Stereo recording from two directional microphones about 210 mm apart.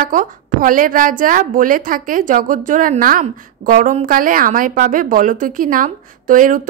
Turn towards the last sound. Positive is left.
turn(degrees=-40)  # may be behind; listen again after turning